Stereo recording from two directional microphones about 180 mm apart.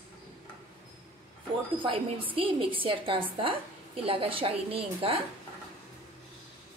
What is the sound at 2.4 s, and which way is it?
A woman's voice, 30° right (ahead or behind).